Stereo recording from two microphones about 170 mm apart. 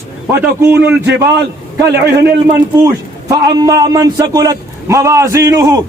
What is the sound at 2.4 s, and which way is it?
A man's voice, 15° right (ahead or behind).